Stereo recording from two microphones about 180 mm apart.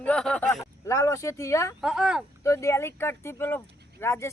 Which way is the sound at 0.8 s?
15° left (ahead or behind).